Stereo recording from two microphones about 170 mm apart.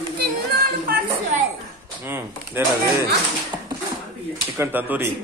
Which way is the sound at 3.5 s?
25° right (ahead or behind).